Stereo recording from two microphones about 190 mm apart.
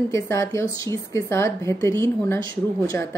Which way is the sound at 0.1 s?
15° left (ahead or behind).